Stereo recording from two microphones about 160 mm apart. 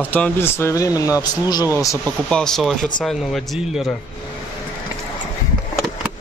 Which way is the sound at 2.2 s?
5° left (ahead or behind).